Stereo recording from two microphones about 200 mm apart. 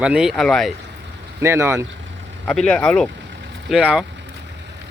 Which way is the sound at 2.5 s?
5° left (ahead or behind).